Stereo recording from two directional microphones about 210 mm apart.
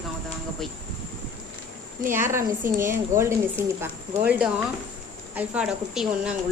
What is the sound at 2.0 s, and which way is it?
A woman's voice, 10° right (ahead or behind).